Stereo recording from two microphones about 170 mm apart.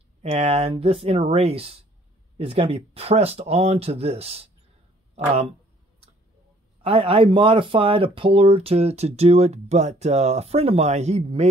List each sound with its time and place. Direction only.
0.2 s speech: 35° right (ahead or behind)
6.8 s speech: 35° right (ahead or behind)